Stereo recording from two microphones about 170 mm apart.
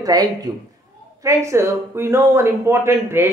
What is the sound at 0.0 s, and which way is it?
A man's voice, 20° right (ahead or behind).